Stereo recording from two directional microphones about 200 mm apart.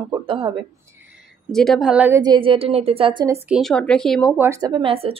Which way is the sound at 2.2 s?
25° right (ahead or behind).